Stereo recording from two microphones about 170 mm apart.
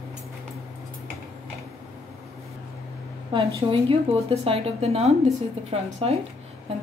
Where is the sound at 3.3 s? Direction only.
35° right (ahead or behind).